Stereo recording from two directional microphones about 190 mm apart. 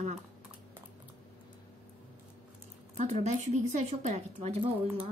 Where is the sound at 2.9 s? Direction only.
35° right (ahead or behind).